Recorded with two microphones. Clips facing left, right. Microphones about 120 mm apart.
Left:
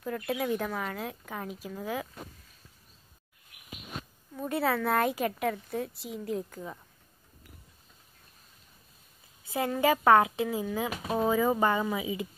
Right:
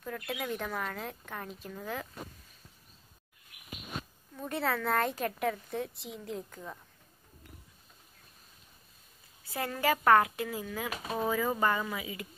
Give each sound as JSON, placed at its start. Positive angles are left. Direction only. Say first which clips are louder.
{"t": 0.1, "sound": "a woman's voice", "louder": "left 6 dB", "side_deg": 0}
{"t": 4.4, "sound": "a woman's voice", "louder": "left 4 dB", "side_deg": 5}
{"t": 9.5, "sound": "speech", "louder": "left 4 dB", "side_deg": 15}